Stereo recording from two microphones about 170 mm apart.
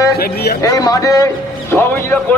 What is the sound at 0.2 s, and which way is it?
Speech, 65° left (ahead or behind).